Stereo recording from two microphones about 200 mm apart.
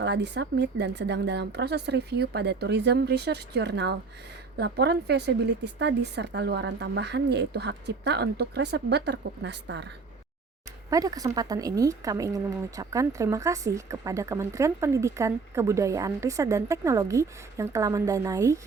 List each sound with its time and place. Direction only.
0.0 s speech: 60° right (ahead or behind)
10.8 s a woman's voice: 20° right (ahead or behind)